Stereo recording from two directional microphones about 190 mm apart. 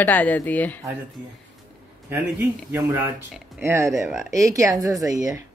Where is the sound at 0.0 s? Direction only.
10° left (ahead or behind).